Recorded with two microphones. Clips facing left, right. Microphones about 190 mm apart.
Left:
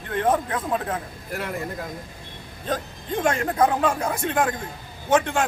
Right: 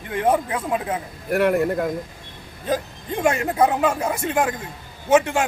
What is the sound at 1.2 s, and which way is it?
Speech, 60° right (ahead or behind).